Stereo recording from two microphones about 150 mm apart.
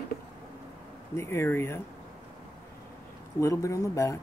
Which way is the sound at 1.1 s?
15° left (ahead or behind).